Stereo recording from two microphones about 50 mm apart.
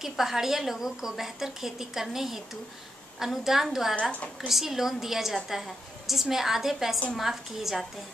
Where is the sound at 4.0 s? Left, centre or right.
Left.